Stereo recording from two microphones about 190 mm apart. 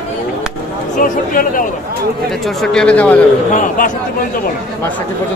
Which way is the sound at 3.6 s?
45° left (ahead or behind).